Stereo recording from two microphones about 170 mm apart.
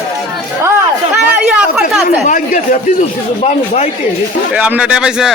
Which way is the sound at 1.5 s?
Centre (ahead or behind).